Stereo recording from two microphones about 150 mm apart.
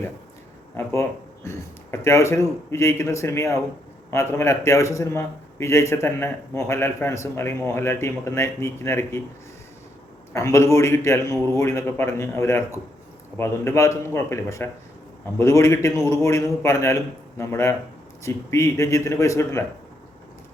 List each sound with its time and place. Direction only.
1.5 s a man's voice: 20° left (ahead or behind)
10.3 s a man's voice: 20° left (ahead or behind)